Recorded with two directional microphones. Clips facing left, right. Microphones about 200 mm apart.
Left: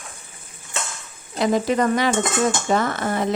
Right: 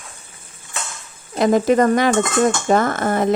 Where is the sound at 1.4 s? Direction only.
50° right (ahead or behind).